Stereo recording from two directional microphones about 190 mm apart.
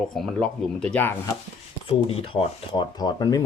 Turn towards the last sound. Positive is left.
turn(degrees=20)  # may be behind; listen again after turning